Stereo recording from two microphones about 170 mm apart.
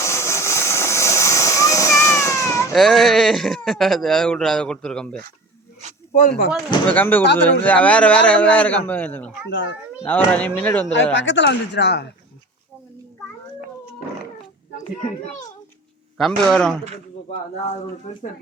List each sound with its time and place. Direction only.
0.0 s vehicle: 15° left (ahead or behind)
2.7 s speech: centre (ahead or behind)
6.1 s speech: 60° left (ahead or behind)
6.8 s a man's voice: 10° left (ahead or behind)
9.5 s speech: 90° left
10.0 s a man's voice: 10° left (ahead or behind)
11.1 s speech: 90° left
16.1 s speech: centre (ahead or behind)